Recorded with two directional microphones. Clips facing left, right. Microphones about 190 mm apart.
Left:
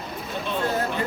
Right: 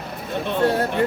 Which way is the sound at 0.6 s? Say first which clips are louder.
Right 6 dB; 65° right (ahead or behind).